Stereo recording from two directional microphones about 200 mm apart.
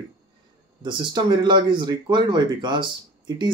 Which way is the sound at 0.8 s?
20° right (ahead or behind).